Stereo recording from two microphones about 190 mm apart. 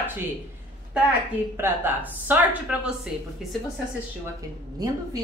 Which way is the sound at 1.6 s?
10° right (ahead or behind).